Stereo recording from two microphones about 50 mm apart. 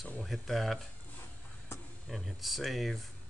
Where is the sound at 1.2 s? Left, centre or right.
Left.